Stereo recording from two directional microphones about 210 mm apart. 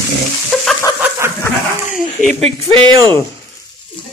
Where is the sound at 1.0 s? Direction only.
10° right (ahead or behind).